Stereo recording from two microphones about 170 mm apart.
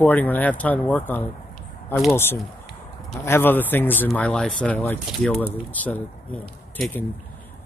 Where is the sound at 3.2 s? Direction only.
15° left (ahead or behind).